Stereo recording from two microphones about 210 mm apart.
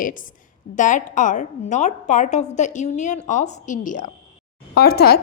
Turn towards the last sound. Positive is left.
turn(degrees=45)  # may be behind; listen again after turning